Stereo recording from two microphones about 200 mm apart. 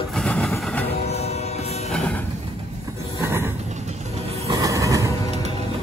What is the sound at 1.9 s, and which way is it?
Music, 5° left (ahead or behind).